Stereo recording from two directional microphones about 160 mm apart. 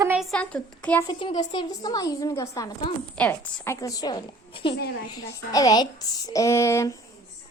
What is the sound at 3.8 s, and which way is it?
A woman's voice, 25° left (ahead or behind).